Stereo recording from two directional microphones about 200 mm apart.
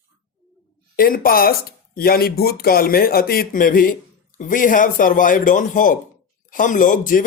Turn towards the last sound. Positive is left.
turn(degrees=40)  # may be behind; listen again after turning